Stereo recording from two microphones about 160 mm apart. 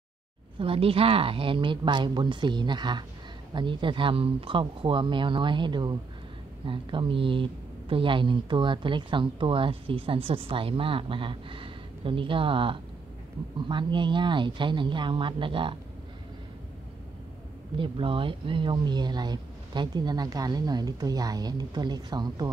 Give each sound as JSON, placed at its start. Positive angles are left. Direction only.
{"t": 0.6, "sound": "speech", "side_deg": -35}
{"t": 17.7, "sound": "speech", "side_deg": -35}